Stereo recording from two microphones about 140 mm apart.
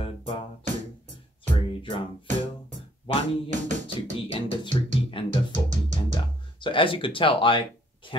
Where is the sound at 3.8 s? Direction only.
40° left (ahead or behind).